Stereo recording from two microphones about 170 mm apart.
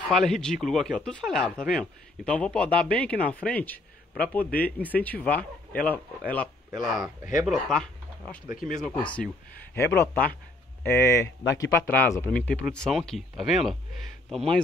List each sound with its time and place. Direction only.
0.1 s speech: centre (ahead or behind)
8.5 s speech: 55° left (ahead or behind)
9.8 s speech: 15° left (ahead or behind)